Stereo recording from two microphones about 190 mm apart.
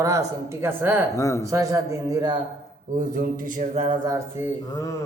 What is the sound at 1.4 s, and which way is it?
Speech, 15° right (ahead or behind).